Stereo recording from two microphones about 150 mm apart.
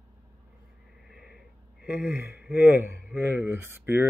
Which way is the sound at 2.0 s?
90° left.